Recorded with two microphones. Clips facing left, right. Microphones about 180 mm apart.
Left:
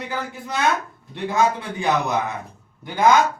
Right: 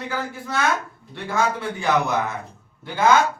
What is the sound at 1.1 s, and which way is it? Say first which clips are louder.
Speech: left 3 dB; 20° left (ahead or behind).